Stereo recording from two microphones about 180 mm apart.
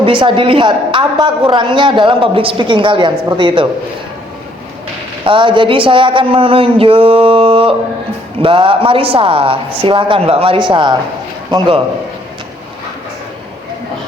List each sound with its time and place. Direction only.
0.0 s a woman's voice: 25° right (ahead or behind)
5.2 s a woman's voice: 30° right (ahead or behind)